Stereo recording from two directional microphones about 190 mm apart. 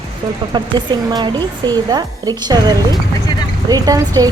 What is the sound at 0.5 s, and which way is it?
Speech, 25° right (ahead or behind).